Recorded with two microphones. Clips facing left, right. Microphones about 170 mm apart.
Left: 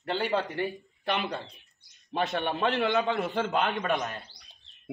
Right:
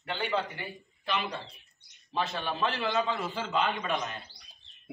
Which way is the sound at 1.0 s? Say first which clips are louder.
Left 3 dB; 55° left (ahead or behind).